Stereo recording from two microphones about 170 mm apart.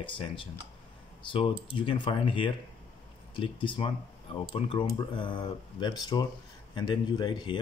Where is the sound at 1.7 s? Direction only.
30° left (ahead or behind).